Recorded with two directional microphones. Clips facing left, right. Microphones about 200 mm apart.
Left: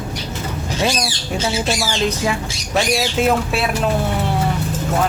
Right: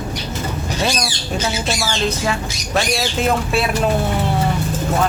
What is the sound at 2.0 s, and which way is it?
Speech, 15° left (ahead or behind).